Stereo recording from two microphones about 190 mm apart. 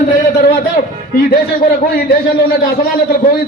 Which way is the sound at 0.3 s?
55° left (ahead or behind).